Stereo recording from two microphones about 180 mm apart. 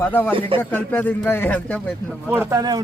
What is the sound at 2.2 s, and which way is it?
Speech, 15° right (ahead or behind).